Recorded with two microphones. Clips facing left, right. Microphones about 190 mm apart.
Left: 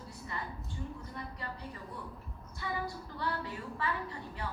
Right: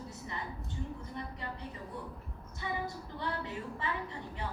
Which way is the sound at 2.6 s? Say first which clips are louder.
Even; 20° right (ahead or behind).